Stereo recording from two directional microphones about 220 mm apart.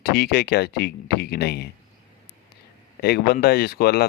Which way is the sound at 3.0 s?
45° left (ahead or behind).